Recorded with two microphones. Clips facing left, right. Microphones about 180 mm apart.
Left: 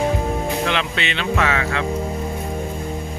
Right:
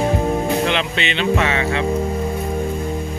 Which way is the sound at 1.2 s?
25° right (ahead or behind).